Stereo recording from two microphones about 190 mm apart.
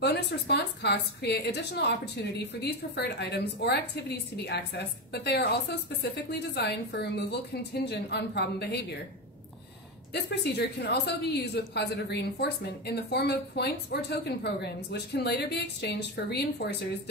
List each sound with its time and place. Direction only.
0.0 s a woman's voice: 60° left (ahead or behind)
10.1 s a woman's voice: 60° left (ahead or behind)